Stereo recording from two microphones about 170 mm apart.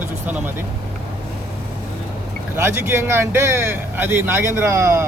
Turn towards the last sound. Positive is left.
turn(degrees=-15)  # may be behind; listen again after turning